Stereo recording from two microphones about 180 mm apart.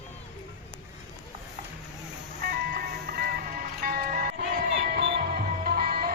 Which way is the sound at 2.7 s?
55° right (ahead or behind).